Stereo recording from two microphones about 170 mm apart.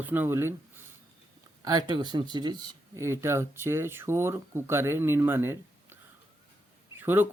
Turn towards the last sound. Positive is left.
turn(degrees=-10)  # may be behind; listen again after turning